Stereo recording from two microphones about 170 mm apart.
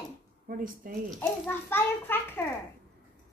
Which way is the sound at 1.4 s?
10° left (ahead or behind).